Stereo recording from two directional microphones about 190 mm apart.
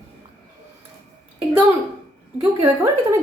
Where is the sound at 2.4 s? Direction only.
15° right (ahead or behind).